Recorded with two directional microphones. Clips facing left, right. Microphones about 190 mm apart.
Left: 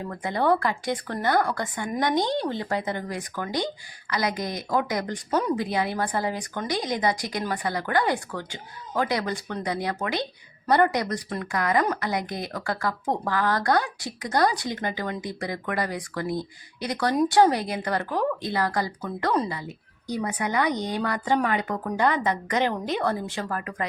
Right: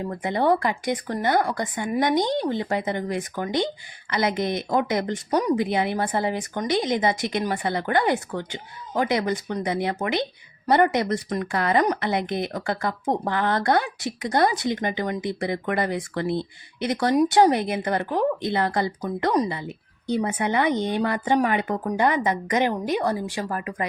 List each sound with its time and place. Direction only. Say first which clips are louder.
0.0 s speech: right 2 dB; 20° right (ahead or behind)